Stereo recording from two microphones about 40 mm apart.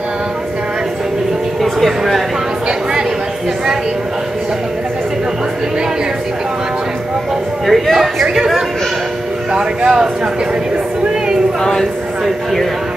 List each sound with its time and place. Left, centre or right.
1.6 s speech: centre
7.6 s a sound: centre
9.5 s speech: right
11.6 s speech: centre